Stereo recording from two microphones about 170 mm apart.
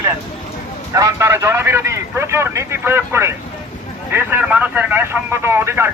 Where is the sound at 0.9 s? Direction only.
20° right (ahead or behind).